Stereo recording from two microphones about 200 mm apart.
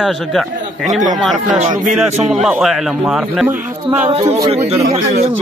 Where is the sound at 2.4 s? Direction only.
Centre (ahead or behind).